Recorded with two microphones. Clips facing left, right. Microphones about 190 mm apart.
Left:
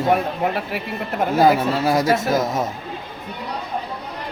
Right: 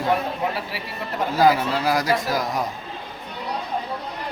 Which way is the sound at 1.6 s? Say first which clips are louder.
Left 3 dB; 25° left (ahead or behind).